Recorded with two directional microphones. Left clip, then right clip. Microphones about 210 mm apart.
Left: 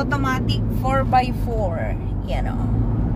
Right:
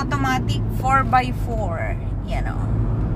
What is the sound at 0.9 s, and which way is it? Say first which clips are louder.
Speech: right 1 dB; 20° left (ahead or behind).